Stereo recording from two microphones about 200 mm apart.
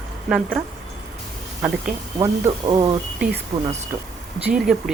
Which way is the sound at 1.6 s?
5° right (ahead or behind).